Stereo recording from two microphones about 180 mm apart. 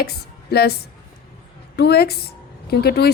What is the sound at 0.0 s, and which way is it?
A woman's voice, 60° left (ahead or behind).